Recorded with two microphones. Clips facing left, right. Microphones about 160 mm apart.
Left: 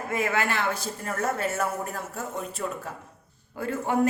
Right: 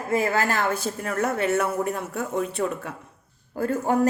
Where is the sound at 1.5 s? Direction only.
65° right (ahead or behind).